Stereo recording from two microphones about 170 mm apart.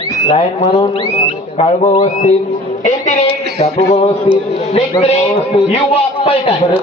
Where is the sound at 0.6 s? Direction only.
40° left (ahead or behind).